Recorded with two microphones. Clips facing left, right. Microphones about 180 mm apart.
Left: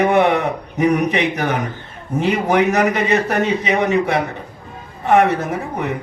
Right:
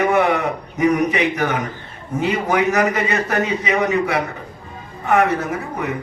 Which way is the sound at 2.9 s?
35° left (ahead or behind).